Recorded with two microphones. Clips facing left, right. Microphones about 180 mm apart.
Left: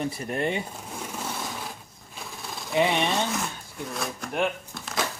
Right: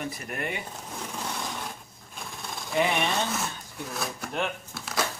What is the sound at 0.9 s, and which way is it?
Sewing machine, 5° left (ahead or behind).